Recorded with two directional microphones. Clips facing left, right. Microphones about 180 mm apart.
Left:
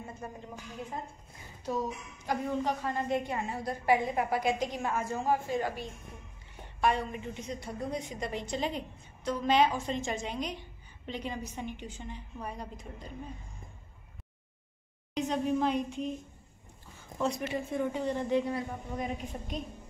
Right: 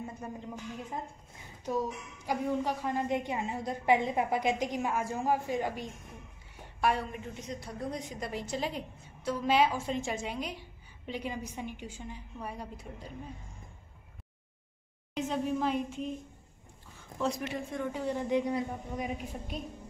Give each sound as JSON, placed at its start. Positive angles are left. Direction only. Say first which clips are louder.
{"t": 1.6, "sound": "a woman's voice", "louder": "right 1 dB", "side_deg": -10}
{"t": 6.8, "sound": "a woman's voice", "louder": "left 1 dB", "side_deg": -5}
{"t": 15.1, "sound": "a woman's voice", "louder": "left 2 dB", "side_deg": -5}
{"t": 17.2, "sound": "a woman's voice", "louder": "left 1 dB", "side_deg": 0}
{"t": 18.0, "sound": "a woman's voice", "louder": "right 3 dB", "side_deg": -10}